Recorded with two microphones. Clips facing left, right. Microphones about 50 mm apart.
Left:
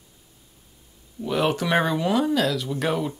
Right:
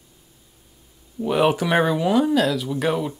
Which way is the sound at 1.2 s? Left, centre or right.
Centre.